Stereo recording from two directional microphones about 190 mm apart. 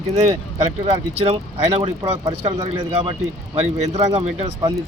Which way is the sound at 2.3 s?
35° right (ahead or behind).